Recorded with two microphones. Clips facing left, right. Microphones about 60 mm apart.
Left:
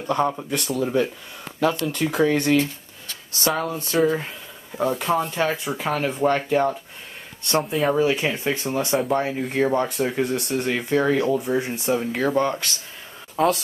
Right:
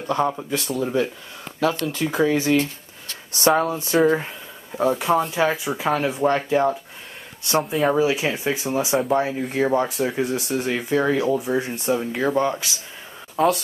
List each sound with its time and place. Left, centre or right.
0.0 s speech: centre
3.3 s speech: right
4.7 s speech: centre